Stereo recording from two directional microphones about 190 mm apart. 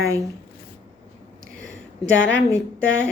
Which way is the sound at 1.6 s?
90° right.